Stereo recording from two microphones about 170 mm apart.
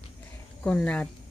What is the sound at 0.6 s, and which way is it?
Speech, 5° left (ahead or behind).